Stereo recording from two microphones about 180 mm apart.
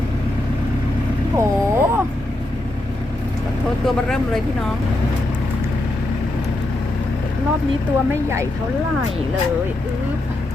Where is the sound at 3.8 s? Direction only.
5° left (ahead or behind).